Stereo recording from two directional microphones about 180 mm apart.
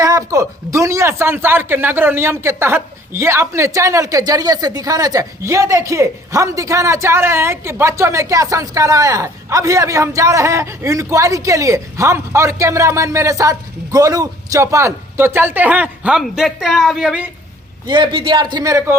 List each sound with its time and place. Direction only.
0.0 s speech: 20° right (ahead or behind)
17.8 s a man's voice: 25° right (ahead or behind)